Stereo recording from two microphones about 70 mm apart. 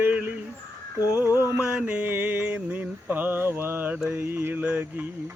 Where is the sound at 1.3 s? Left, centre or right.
Right.